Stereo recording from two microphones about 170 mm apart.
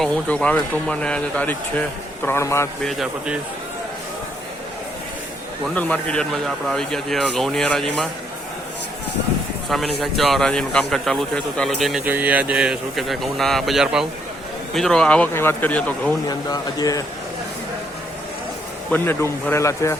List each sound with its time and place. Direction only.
0.0 s speech: 5° left (ahead or behind)
2.8 s speech: centre (ahead or behind)
5.6 s speech: 10° left (ahead or behind)
9.6 s speech: centre (ahead or behind)
16.5 s speech: 20° left (ahead or behind)
18.9 s speech: 10° left (ahead or behind)